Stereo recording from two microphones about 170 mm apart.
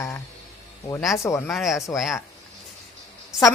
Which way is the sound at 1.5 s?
Centre (ahead or behind).